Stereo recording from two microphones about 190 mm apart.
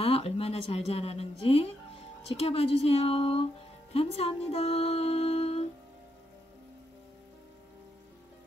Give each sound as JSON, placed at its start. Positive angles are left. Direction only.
{"t": 0.0, "sound": "speech", "side_deg": 30}
{"t": 2.2, "sound": "music", "side_deg": 30}